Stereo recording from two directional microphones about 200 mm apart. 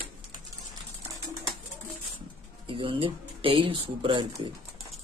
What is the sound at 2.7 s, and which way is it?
Speech, 25° right (ahead or behind).